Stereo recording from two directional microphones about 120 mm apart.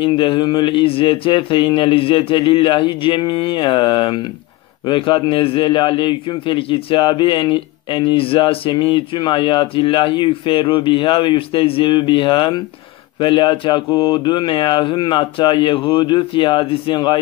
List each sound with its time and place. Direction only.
0.0 s a man's voice: 45° left (ahead or behind)